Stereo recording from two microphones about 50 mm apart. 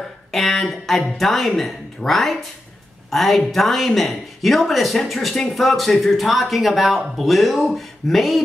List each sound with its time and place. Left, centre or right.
0.3 s a woman's voice: centre